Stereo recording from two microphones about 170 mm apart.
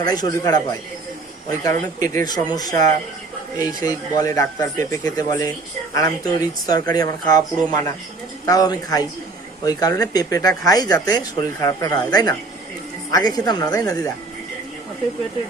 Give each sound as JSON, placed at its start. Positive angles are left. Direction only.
{"t": 0.0, "sound": "speech", "side_deg": 25}